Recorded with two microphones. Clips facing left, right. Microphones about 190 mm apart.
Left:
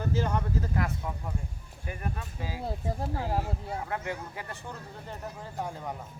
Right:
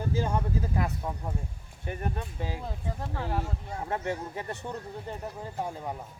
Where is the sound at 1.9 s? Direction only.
25° right (ahead or behind).